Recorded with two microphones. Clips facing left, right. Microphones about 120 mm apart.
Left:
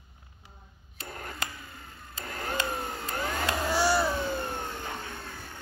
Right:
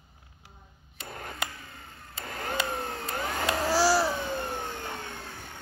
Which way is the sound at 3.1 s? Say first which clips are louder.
Even; 10° right (ahead or behind).